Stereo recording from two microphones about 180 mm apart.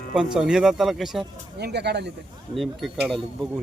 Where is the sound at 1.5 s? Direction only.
65° right (ahead or behind).